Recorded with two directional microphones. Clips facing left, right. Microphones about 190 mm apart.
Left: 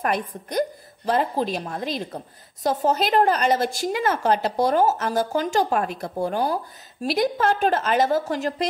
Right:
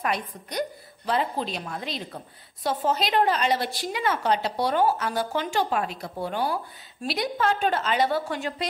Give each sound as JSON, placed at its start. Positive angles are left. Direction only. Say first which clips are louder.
{"t": 0.0, "sound": "a woman's voice", "louder": "left 4 dB", "side_deg": 50}